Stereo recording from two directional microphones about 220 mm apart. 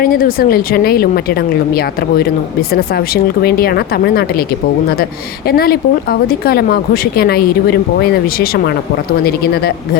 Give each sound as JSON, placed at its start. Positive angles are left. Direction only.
{"t": 0.0, "sound": "a woman's voice", "side_deg": 40}
{"t": 5.5, "sound": "a woman's voice", "side_deg": 45}